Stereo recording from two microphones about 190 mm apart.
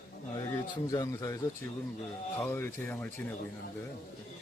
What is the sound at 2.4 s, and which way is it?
Speech, 15° left (ahead or behind).